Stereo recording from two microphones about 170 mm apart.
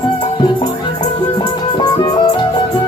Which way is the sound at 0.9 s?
25° left (ahead or behind).